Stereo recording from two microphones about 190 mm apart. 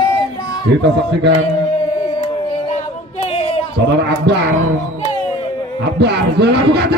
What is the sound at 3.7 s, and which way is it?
Speech, 60° right (ahead or behind).